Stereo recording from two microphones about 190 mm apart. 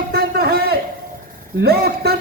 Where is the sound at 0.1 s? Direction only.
55° right (ahead or behind).